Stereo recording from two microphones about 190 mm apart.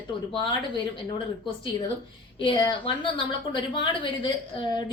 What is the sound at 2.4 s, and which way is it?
Speech, 25° left (ahead or behind).